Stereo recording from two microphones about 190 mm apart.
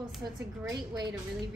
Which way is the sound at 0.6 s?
20° right (ahead or behind).